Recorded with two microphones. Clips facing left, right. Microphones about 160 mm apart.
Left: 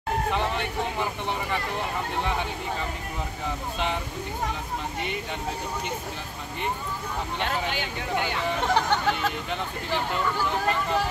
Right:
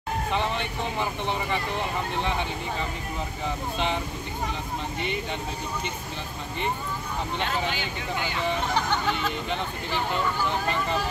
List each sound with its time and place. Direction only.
0.3 s speech: 5° left (ahead or behind)
7.4 s speech: 60° left (ahead or behind)